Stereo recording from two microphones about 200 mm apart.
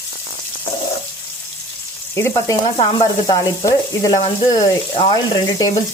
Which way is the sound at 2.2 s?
15° left (ahead or behind).